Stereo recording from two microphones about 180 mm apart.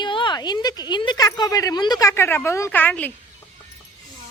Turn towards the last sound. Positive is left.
turn(degrees=10)  # may be behind; listen again after turning